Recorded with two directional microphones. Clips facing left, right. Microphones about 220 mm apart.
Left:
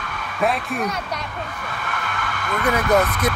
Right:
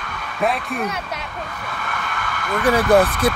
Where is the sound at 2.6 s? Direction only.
30° right (ahead or behind).